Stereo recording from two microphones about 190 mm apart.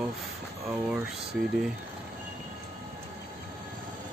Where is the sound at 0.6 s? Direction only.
10° right (ahead or behind).